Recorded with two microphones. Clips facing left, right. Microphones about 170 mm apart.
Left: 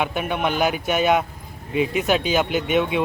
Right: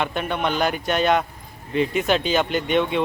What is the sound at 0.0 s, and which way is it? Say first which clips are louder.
Speech: left 1 dB; 10° left (ahead or behind).